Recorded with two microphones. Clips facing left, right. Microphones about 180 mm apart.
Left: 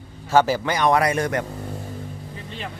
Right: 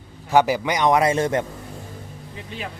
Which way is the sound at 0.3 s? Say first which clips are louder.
Even; 15° right (ahead or behind).